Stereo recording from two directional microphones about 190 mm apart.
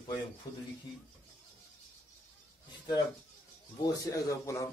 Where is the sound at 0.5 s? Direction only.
20° left (ahead or behind).